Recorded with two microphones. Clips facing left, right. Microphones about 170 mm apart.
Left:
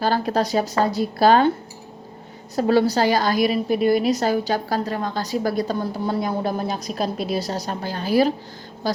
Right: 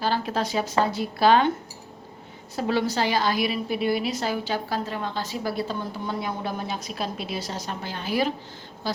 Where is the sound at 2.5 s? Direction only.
40° left (ahead or behind).